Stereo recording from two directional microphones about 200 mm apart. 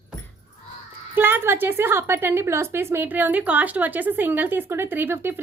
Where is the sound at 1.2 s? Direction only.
10° right (ahead or behind).